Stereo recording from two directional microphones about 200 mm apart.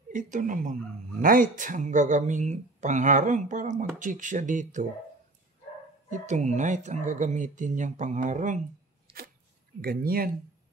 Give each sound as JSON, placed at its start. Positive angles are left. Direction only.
{"t": 0.1, "sound": "speech", "side_deg": -40}
{"t": 6.0, "sound": "speech", "side_deg": -40}
{"t": 9.1, "sound": "a sound", "side_deg": -25}
{"t": 9.8, "sound": "speech", "side_deg": -50}